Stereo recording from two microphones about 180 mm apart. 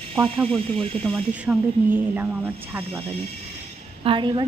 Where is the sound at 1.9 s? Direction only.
10° right (ahead or behind).